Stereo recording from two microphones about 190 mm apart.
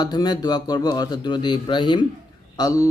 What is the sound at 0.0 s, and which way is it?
Mantra, 20° left (ahead or behind).